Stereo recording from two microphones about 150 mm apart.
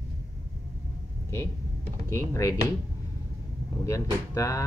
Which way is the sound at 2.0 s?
20° left (ahead or behind).